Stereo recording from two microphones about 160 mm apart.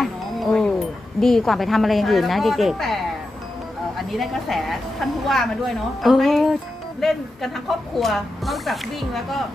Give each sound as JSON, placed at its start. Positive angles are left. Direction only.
{"t": 0.0, "sound": "speech", "side_deg": 0}
{"t": 4.1, "sound": "speech", "side_deg": 0}